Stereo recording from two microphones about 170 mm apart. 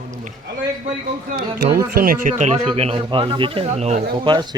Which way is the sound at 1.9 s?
60° right (ahead or behind).